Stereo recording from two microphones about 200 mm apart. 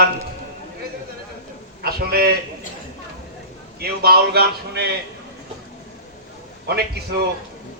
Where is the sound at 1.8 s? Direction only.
50° right (ahead or behind).